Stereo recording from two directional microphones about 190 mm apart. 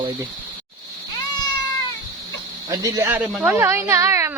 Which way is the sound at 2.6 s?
20° right (ahead or behind).